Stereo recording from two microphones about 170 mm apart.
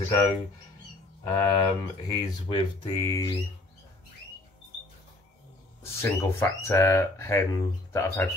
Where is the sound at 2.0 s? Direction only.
20° left (ahead or behind).